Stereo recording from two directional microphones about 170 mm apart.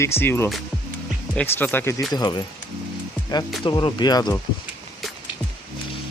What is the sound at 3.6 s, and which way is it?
Speech, 25° left (ahead or behind).